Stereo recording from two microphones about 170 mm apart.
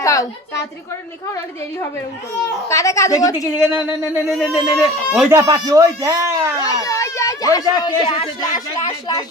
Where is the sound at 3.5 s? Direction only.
10° right (ahead or behind).